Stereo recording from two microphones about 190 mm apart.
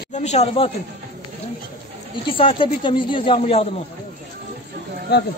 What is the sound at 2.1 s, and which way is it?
Speech, 30° left (ahead or behind).